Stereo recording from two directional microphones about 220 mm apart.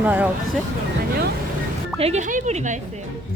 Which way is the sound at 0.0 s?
5° right (ahead or behind).